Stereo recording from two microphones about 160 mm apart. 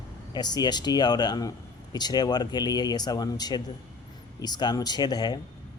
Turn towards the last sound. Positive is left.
turn(degrees=25)  # may be behind; listen again after turning